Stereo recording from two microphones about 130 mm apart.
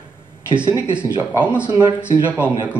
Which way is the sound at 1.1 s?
10° right (ahead or behind).